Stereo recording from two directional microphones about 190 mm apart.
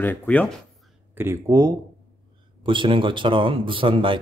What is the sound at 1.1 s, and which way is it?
A man's voice, 15° right (ahead or behind).